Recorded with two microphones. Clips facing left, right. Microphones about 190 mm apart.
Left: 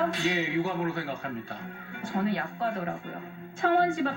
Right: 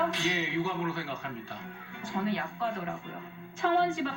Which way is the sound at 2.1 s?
45° left (ahead or behind).